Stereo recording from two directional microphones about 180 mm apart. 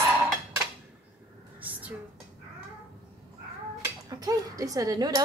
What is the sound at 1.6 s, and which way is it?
Whispering, 10° right (ahead or behind).